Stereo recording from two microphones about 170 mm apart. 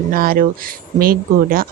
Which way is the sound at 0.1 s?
55° right (ahead or behind).